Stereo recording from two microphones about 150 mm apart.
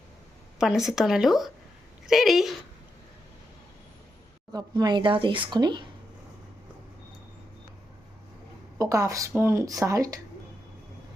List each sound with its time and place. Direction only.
0.6 s speech: 5° right (ahead or behind)
4.5 s speech: 30° right (ahead or behind)
8.8 s speech: 20° right (ahead or behind)